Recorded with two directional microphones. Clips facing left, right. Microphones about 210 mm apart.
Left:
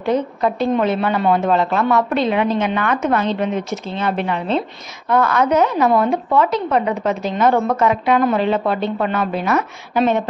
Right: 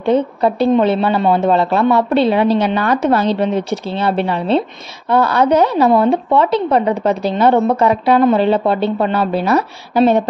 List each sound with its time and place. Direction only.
0.0 s speech: 30° right (ahead or behind)